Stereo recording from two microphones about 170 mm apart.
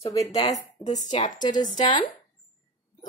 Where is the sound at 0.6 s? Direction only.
45° left (ahead or behind).